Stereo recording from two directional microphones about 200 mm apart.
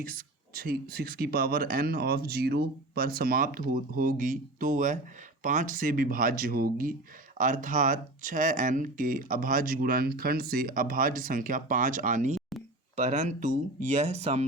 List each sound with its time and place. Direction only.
0.0 s speech: 45° right (ahead or behind)